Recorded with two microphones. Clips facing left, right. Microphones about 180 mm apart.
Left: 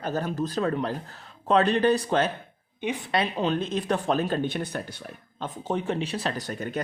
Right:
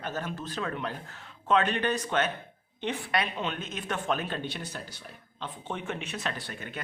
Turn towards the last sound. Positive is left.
turn(degrees=40)  # may be behind; listen again after turning